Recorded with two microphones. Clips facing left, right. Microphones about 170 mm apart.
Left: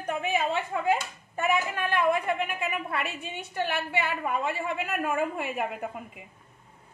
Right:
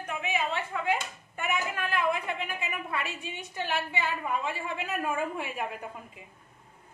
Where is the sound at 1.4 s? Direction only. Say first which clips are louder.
Left 4 dB; 50° left (ahead or behind).